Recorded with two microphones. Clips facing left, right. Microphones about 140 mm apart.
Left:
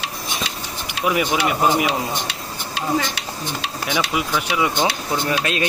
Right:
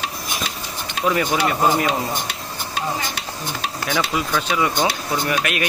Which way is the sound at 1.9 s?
45° right (ahead or behind).